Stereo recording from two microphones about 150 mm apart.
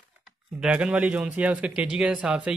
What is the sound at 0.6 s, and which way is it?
Speech, 5° right (ahead or behind).